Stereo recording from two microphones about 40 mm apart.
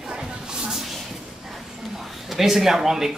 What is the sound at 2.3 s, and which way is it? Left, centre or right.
Speech, centre.